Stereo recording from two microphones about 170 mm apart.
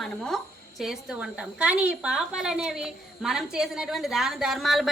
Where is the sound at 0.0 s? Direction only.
5° left (ahead or behind).